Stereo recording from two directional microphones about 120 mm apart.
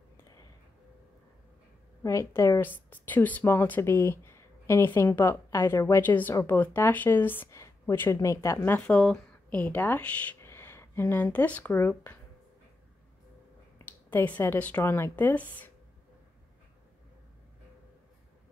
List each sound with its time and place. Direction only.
2.0 s speech: 25° left (ahead or behind)
2.6 s a woman's voice: 15° left (ahead or behind)
14.1 s speech: 15° left (ahead or behind)